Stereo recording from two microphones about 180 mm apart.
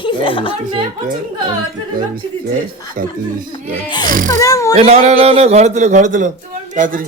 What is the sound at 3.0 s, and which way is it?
Speech, 50° right (ahead or behind).